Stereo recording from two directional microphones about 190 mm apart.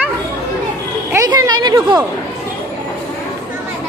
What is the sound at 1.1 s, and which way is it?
Speech, 15° right (ahead or behind).